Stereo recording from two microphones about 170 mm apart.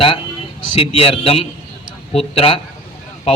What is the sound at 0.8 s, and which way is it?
A man's voice, 35° left (ahead or behind).